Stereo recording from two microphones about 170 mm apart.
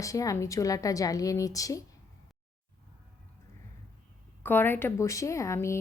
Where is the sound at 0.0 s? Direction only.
20° left (ahead or behind).